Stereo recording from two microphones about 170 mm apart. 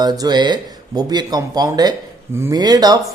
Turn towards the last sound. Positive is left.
turn(degrees=-25)  # may be behind; listen again after turning